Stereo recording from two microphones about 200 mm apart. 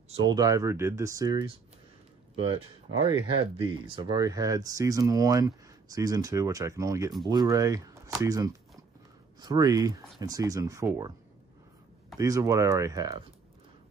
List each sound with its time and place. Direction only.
0.2 s speech: 20° right (ahead or behind)
3.1 s speech: 20° right (ahead or behind)
12.2 s speech: 15° right (ahead or behind)